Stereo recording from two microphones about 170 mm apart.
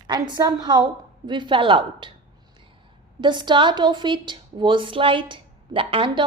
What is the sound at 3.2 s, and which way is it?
A woman's voice, 25° right (ahead or behind).